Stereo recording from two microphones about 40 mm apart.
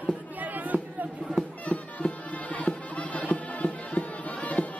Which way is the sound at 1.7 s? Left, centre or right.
Left.